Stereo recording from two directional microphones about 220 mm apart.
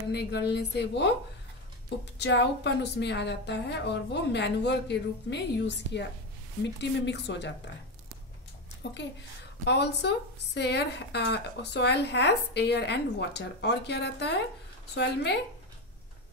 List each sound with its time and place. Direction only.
0.1 s a woman's voice: 50° left (ahead or behind)
2.1 s a woman's voice: 50° left (ahead or behind)
8.8 s a woman's voice: 55° left (ahead or behind)